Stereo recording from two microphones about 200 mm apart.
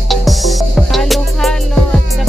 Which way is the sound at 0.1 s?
Centre (ahead or behind).